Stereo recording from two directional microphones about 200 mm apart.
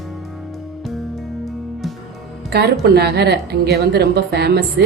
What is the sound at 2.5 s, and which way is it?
A woman's voice, 55° right (ahead or behind).